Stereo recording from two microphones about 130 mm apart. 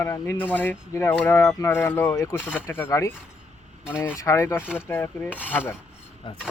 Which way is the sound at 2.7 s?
20° left (ahead or behind).